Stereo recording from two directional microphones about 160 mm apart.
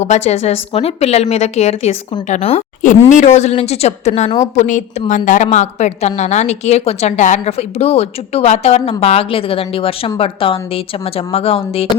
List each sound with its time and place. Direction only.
0.0 s a woman's voice: 45° left (ahead or behind)